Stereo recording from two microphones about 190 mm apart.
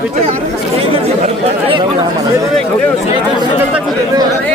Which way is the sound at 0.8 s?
30° right (ahead or behind).